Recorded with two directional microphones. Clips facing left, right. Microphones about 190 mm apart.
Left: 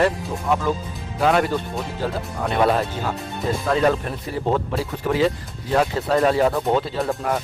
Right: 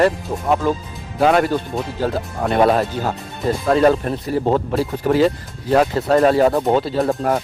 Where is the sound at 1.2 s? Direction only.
45° right (ahead or behind).